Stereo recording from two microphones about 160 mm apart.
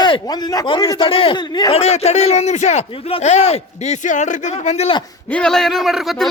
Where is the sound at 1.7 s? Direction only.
40° left (ahead or behind).